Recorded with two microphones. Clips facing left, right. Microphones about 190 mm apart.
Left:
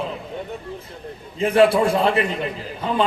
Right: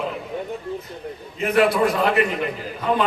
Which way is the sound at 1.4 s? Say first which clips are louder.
Left 2 dB; 30° left (ahead or behind).